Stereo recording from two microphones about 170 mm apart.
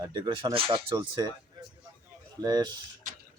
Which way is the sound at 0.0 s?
25° right (ahead or behind).